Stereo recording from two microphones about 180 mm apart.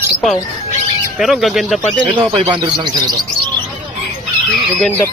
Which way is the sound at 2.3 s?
25° right (ahead or behind).